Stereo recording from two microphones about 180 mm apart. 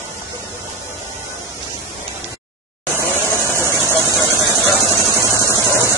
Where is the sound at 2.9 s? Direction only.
15° left (ahead or behind).